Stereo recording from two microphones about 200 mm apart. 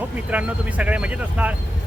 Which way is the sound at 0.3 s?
5° right (ahead or behind).